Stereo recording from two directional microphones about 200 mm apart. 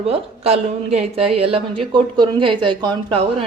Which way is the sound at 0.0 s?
30° right (ahead or behind).